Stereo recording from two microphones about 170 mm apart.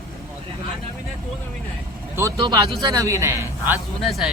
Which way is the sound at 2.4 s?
25° right (ahead or behind).